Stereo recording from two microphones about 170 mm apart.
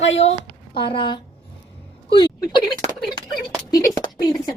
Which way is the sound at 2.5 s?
25° left (ahead or behind).